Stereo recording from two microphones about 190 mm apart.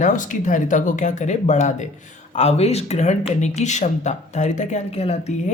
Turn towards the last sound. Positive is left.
turn(degrees=35)  # may be behind; listen again after turning